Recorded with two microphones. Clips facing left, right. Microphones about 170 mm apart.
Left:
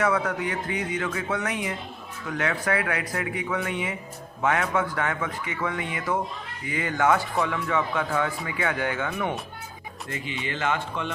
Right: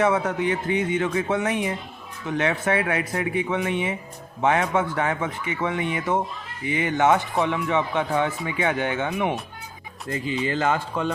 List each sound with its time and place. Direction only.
0.0 s speech: 25° right (ahead or behind)
10.1 s speech: 35° right (ahead or behind)